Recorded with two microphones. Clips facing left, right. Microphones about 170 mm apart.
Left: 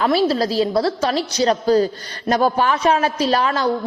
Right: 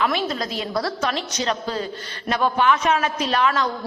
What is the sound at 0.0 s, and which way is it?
A woman's voice, 35° left (ahead or behind).